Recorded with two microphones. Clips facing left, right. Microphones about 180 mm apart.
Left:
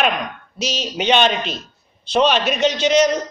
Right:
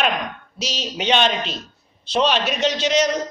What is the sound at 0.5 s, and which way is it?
Speech, 50° left (ahead or behind).